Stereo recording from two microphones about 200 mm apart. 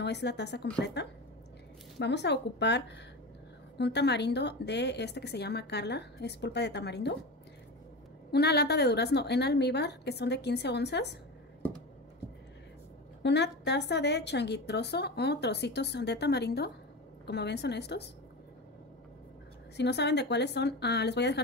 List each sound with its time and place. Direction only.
0.0 s a woman's voice: 60° left (ahead or behind)
8.3 s a woman's voice: 55° left (ahead or behind)
13.2 s a woman's voice: 60° left (ahead or behind)
19.8 s a woman's voice: 60° left (ahead or behind)